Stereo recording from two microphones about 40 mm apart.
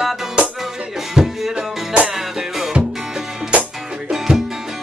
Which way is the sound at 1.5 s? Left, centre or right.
Right.